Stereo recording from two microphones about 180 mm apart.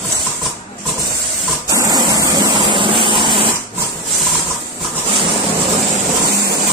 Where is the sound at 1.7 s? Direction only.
20° right (ahead or behind).